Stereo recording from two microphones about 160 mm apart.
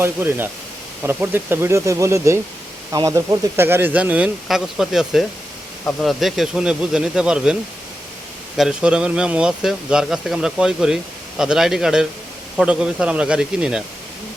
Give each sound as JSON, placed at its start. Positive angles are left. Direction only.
{"t": 0.0, "sound": "speech", "side_deg": -15}
{"t": 8.5, "sound": "speech", "side_deg": -5}